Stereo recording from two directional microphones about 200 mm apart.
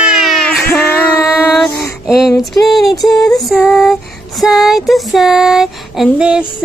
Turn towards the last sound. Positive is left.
turn(degrees=-5)  # may be behind; listen again after turning